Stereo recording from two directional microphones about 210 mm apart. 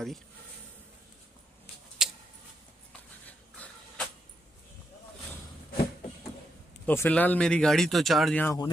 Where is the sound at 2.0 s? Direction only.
Centre (ahead or behind).